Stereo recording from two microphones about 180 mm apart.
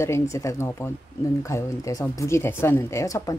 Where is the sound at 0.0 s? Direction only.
15° left (ahead or behind).